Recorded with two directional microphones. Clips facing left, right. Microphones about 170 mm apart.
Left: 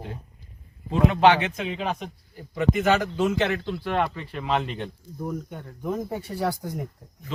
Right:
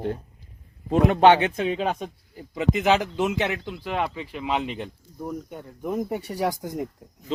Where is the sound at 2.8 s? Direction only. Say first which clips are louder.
Right 2 dB; 15° right (ahead or behind).